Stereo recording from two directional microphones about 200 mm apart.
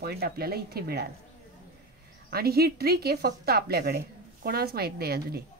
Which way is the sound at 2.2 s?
50° right (ahead or behind).